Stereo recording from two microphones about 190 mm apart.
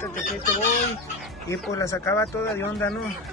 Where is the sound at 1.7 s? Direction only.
15° left (ahead or behind).